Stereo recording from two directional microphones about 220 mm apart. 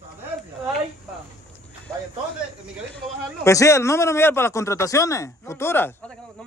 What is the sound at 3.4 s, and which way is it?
Speech, 15° left (ahead or behind).